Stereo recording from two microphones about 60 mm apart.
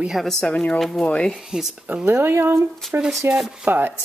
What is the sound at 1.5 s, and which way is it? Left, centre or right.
Speech, centre.